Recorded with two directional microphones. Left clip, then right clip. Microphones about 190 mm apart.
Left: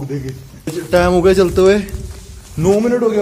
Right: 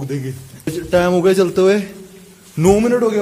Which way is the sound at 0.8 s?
Centre (ahead or behind).